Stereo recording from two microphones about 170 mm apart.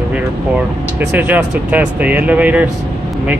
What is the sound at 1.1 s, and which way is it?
Speech, 10° right (ahead or behind).